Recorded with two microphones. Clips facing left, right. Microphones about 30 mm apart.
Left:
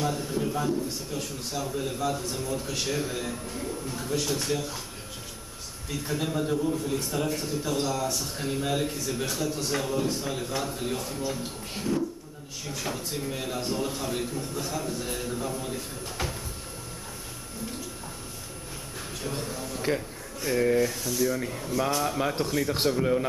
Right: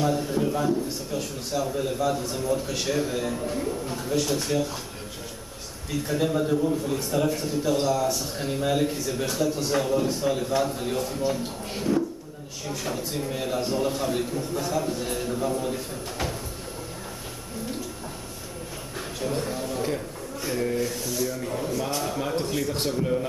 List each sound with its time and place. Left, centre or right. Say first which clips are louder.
0.0 s a man's voice: right 4 dB; centre
3.4 s a man's voice: right 5 dB; centre
5.9 s a man's voice: right 5 dB; centre
19.4 s speech: right 5 dB; centre
20.4 s speech: left 3 dB; centre
21.0 s a man's voice: left 1 dB; centre